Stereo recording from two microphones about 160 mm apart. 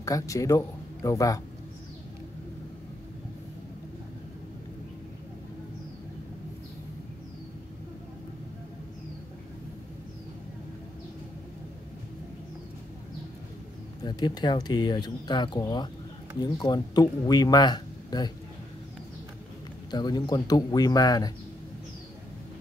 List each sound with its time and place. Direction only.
0.0 s speech: 20° left (ahead or behind)
14.0 s speech: 25° left (ahead or behind)
19.9 s speech: 25° left (ahead or behind)